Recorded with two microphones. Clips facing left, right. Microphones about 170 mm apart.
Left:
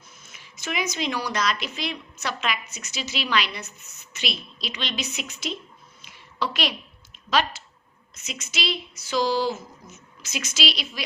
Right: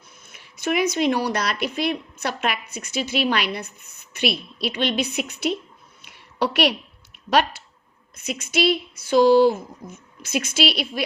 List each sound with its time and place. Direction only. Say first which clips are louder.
0.2 s speech: right 11 dB; 55° right (ahead or behind)
6.0 s a sound: right 6 dB; 65° right (ahead or behind)
8.1 s speech: right 10 dB; 55° right (ahead or behind)